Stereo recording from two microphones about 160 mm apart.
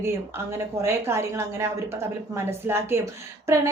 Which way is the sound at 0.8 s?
15° right (ahead or behind).